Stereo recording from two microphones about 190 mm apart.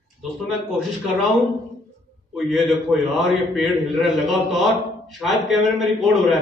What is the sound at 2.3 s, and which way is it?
A man's voice, centre (ahead or behind).